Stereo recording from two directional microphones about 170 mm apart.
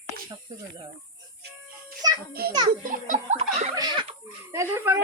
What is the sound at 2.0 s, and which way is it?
Music, 20° right (ahead or behind).